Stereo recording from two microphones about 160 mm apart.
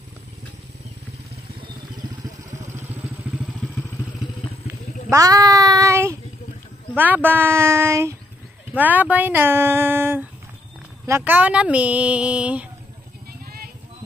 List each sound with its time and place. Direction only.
3.3 s vehicle: 10° right (ahead or behind)
4.6 s a sound: 55° left (ahead or behind)
5.1 s child singing: 20° right (ahead or behind)
7.0 s speech: 10° right (ahead or behind)